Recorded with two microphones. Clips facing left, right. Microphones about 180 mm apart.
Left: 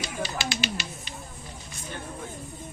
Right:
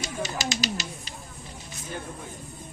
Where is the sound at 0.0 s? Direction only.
45° right (ahead or behind).